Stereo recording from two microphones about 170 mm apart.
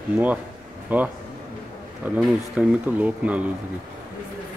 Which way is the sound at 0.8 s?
10° right (ahead or behind).